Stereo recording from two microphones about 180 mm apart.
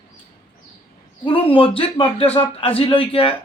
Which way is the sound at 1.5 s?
30° left (ahead or behind).